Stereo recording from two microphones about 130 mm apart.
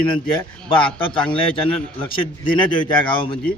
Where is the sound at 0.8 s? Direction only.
40° left (ahead or behind).